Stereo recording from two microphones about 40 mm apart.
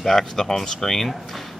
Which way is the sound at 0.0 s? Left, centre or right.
Centre.